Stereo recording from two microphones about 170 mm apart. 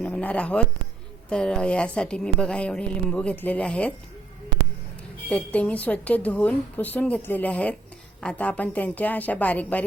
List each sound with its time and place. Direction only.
0.0 s a sound: 5° left (ahead or behind)
1.3 s a woman's voice: 5° left (ahead or behind)
5.3 s a woman's voice: 10° left (ahead or behind)